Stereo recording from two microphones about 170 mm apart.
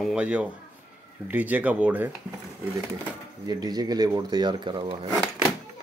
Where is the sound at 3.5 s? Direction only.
25° right (ahead or behind).